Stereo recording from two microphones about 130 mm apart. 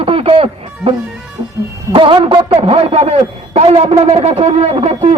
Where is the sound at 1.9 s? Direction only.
40° right (ahead or behind).